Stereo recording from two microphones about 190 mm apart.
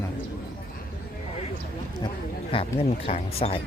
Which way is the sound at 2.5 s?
30° left (ahead or behind).